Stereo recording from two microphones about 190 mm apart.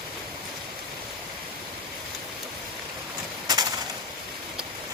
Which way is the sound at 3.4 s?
20° right (ahead or behind).